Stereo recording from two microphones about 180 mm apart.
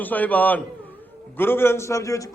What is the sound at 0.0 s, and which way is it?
A man's voice, 10° left (ahead or behind).